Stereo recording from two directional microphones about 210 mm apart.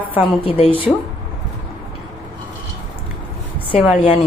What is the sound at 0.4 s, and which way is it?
Speech, 25° left (ahead or behind).